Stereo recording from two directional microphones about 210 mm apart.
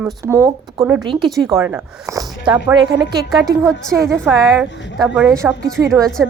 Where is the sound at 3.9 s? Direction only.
15° right (ahead or behind).